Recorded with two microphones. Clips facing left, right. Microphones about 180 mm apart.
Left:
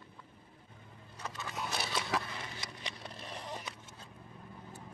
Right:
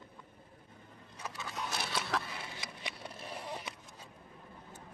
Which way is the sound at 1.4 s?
Centre (ahead or behind).